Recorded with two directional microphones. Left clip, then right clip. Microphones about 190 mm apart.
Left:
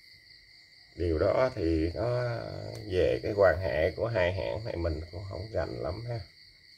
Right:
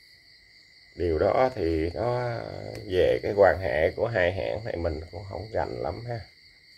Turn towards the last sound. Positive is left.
turn(degrees=-25)  # may be behind; listen again after turning